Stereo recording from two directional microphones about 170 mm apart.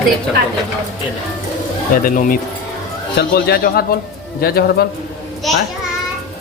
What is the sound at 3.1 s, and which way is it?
Speech, 70° left (ahead or behind).